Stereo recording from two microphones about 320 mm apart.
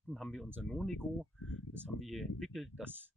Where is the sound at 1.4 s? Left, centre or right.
Left.